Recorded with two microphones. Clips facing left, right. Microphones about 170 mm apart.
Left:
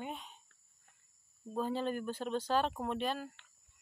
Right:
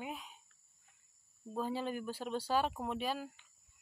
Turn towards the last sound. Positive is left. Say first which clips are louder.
# left 2 dB
turn(degrees=-5)  # may be behind; listen again after turning